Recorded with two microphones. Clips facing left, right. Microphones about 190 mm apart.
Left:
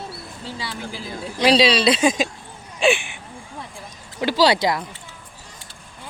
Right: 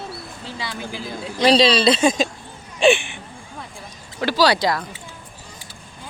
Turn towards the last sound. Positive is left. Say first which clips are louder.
# even
turn(degrees=20)  # may be behind; listen again after turning